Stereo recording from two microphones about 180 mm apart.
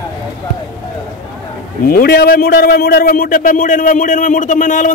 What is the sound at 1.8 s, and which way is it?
A man's voice, 55° left (ahead or behind).